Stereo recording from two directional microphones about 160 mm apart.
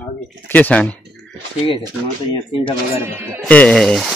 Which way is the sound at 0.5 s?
10° left (ahead or behind).